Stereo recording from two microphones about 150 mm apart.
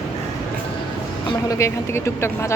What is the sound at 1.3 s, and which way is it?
Speech, 20° left (ahead or behind).